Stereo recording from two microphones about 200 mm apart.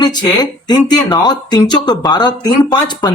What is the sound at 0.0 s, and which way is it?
Speech, 20° left (ahead or behind).